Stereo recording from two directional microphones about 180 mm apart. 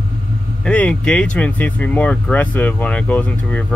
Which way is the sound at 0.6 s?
5° left (ahead or behind).